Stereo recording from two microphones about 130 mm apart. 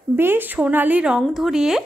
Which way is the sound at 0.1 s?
15° right (ahead or behind).